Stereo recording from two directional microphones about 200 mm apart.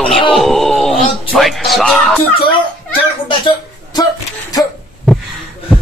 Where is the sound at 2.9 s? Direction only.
25° left (ahead or behind).